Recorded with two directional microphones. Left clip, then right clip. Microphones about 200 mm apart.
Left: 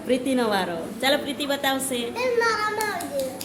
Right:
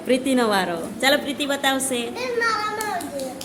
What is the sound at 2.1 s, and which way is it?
Speech, 20° left (ahead or behind).